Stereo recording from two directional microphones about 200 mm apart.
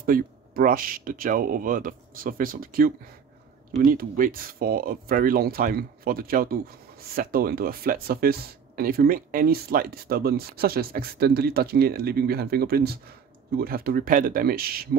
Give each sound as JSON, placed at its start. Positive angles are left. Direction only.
{"t": 0.0, "sound": "speech", "side_deg": -45}
{"t": 3.9, "sound": "speech", "side_deg": -45}